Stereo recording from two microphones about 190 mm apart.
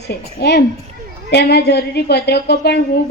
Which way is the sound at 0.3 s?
60° left (ahead or behind).